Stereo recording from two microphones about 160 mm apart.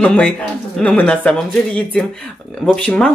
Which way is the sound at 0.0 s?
5° left (ahead or behind).